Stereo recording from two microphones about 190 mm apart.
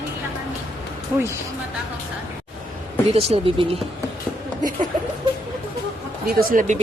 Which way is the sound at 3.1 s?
30° right (ahead or behind).